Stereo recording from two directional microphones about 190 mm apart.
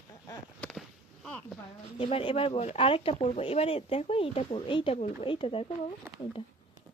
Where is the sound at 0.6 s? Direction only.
Centre (ahead or behind).